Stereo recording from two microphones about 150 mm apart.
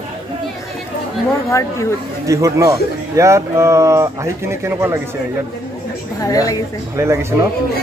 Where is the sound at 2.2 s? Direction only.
20° right (ahead or behind).